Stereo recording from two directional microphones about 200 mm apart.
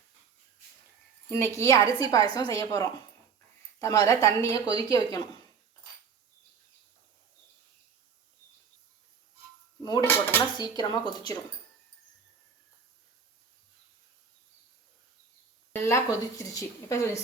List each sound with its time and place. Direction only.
1.3 s speech: 15° left (ahead or behind)
4.6 s speech: 25° right (ahead or behind)
10.0 s speech: 10° left (ahead or behind)
15.7 s speech: 15° left (ahead or behind)